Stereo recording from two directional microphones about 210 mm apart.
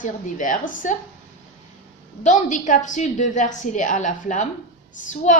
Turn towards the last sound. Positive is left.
turn(degrees=35)  # may be behind; listen again after turning